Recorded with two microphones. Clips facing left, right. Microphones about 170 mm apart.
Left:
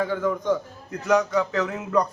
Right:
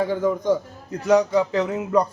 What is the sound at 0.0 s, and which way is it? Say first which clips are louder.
A man's voice: right 3 dB; 30° right (ahead or behind).